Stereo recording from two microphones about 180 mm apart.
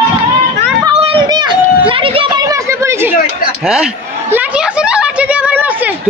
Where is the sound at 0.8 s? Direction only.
30° right (ahead or behind); by 3.2 s 15° right (ahead or behind).